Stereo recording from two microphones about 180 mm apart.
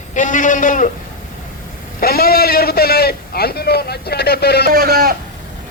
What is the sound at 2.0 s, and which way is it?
A man's voice, 60° left (ahead or behind).